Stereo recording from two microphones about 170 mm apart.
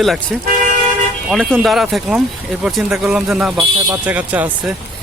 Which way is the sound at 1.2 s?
Centre (ahead or behind).